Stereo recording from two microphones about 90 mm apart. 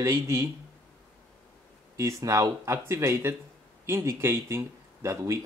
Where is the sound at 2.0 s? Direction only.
35° right (ahead or behind).